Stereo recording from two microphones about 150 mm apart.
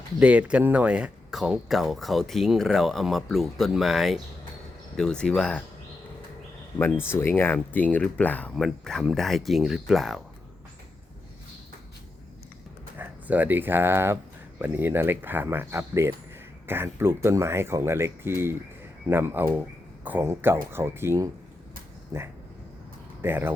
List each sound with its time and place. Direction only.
0.2 s speech: 10° right (ahead or behind)
6.7 s speech: 15° left (ahead or behind); by 10.2 s centre (ahead or behind)
13.0 s speech: 10° right (ahead or behind)
23.2 s speech: 15° right (ahead or behind)